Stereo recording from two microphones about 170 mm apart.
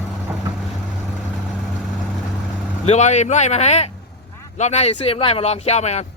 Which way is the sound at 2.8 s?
40° left (ahead or behind).